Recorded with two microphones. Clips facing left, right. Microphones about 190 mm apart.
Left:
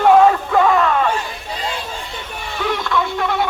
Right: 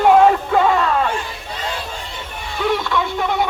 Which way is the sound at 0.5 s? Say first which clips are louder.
Left 1 dB; 25° right (ahead or behind).